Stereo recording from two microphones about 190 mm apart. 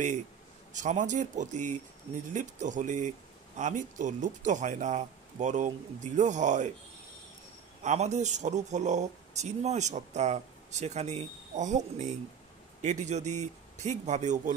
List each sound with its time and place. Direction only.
0.7 s speech: 40° right (ahead or behind)
7.8 s speech: 35° right (ahead or behind)